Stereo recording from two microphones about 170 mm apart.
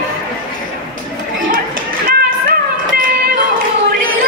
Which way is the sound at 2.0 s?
55° right (ahead or behind).